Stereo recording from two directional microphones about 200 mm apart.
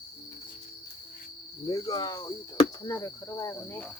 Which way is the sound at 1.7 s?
20° left (ahead or behind).